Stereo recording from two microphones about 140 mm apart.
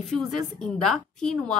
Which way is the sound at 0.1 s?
5° left (ahead or behind).